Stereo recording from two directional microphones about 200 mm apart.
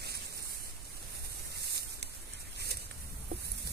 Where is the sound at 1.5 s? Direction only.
55° right (ahead or behind).